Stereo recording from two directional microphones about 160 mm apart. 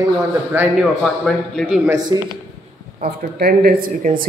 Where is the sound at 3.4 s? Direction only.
70° right (ahead or behind).